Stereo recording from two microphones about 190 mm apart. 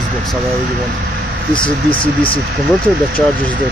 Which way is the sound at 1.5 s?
25° left (ahead or behind).